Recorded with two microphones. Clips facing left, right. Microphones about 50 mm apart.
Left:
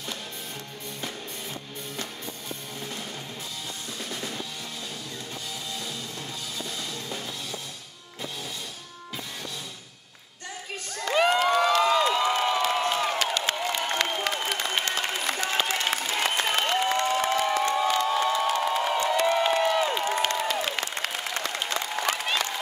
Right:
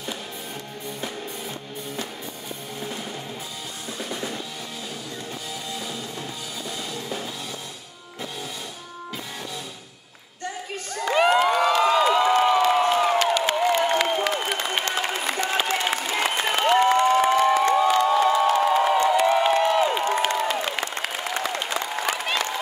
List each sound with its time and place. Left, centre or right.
4.0 s music: centre
6.9 s music: centre
11.0 s a sound: centre
13.8 s applause: centre
16.9 s crowd: centre
19.0 s a sound: centre
20.3 s applause: centre